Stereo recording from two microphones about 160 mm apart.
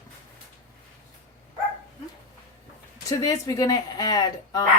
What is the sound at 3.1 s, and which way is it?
Speech, 20° left (ahead or behind).